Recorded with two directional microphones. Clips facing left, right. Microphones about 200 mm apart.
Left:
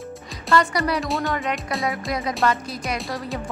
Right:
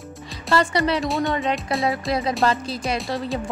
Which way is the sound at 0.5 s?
30° right (ahead or behind).